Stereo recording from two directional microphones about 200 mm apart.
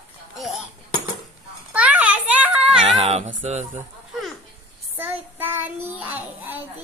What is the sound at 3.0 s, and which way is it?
Cat, 35° right (ahead or behind).